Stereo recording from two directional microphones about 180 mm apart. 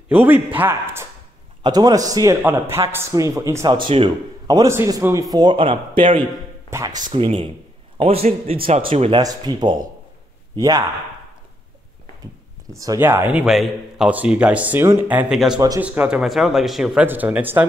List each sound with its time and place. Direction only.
0.1 s a man's voice: 10° right (ahead or behind); by 6.2 s 30° right (ahead or behind)
6.7 s speech: 15° right (ahead or behind)
7.1 s a man's voice: 30° right (ahead or behind)
9.2 s a man's voice: 20° right (ahead or behind)
12.7 s speech: 20° right (ahead or behind)